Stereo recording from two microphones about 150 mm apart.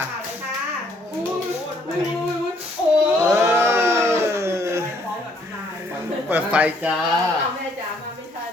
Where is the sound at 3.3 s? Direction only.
15° right (ahead or behind).